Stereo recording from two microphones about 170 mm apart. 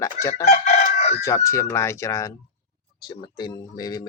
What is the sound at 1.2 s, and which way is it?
Speech, 15° left (ahead or behind).